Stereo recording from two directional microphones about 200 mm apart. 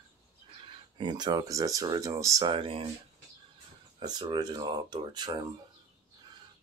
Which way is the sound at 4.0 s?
20° right (ahead or behind).